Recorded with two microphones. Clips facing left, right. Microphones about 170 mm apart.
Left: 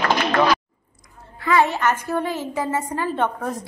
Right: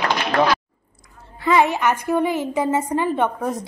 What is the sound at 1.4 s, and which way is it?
A woman's voice, 15° right (ahead or behind).